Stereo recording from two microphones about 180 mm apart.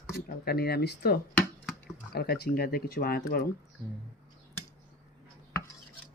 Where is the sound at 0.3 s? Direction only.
60° left (ahead or behind).